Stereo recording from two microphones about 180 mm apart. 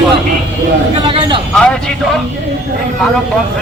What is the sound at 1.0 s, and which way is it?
Speech, 30° right (ahead or behind).